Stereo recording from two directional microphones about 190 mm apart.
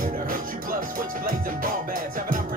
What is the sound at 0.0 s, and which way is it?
Music, 45° right (ahead or behind).